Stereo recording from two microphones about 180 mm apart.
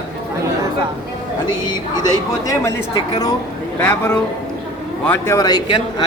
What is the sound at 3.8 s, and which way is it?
A woman's voice, 5° left (ahead or behind).